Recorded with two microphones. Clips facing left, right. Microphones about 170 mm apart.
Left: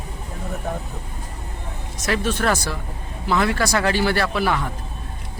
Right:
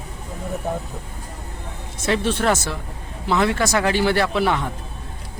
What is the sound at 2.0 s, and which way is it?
Speech, 30° right (ahead or behind).